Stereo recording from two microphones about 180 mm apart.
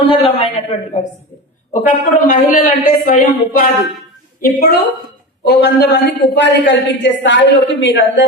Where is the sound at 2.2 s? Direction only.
50° left (ahead or behind).